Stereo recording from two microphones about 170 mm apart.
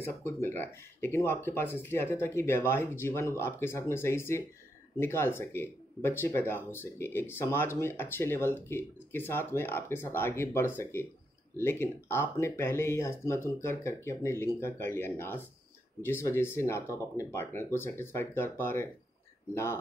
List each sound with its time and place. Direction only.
0.0 s speech: 15° left (ahead or behind)